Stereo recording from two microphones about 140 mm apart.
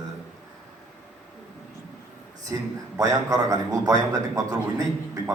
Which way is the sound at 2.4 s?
25° right (ahead or behind).